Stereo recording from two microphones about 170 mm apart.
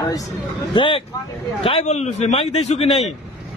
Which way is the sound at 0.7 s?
30° left (ahead or behind).